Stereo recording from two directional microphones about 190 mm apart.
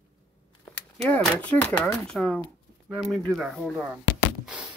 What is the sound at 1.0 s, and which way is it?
Speech, 10° left (ahead or behind).